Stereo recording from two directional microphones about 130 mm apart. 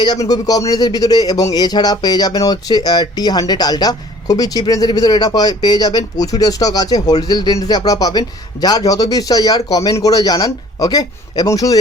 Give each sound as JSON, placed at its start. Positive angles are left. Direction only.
{"t": 0.0, "sound": "a man's voice", "side_deg": 30}